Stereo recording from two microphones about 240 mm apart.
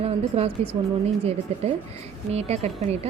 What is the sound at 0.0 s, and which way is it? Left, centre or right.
A woman's voice, right.